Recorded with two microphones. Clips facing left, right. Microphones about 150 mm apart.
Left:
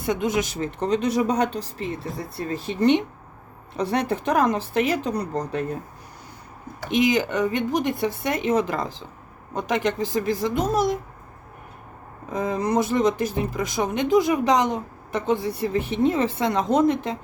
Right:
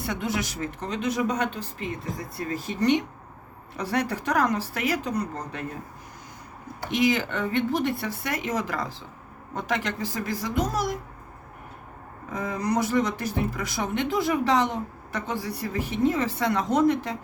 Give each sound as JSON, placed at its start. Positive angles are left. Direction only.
{"t": 0.0, "sound": "speech", "side_deg": 20}
{"t": 6.9, "sound": "speech", "side_deg": 20}
{"t": 12.3, "sound": "speech", "side_deg": 25}